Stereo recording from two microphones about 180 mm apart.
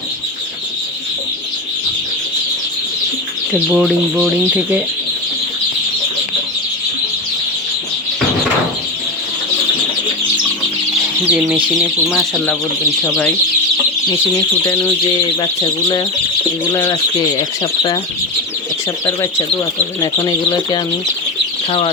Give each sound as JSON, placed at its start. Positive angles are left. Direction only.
{"t": 3.7, "sound": "speech", "side_deg": -5}
{"t": 11.3, "sound": "speech", "side_deg": -5}
{"t": 13.1, "sound": "speech", "side_deg": 10}
{"t": 15.0, "sound": "speech", "side_deg": 25}
{"t": 19.0, "sound": "speech", "side_deg": 15}